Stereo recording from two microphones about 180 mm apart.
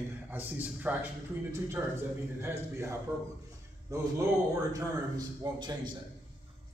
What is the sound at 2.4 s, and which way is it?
A man's voice, 15° right (ahead or behind).